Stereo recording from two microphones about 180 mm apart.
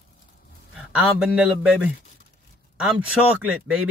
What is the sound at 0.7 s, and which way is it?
A man's voice, 5° right (ahead or behind).